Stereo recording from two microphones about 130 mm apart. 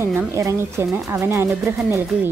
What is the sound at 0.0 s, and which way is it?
Speech, 20° right (ahead or behind).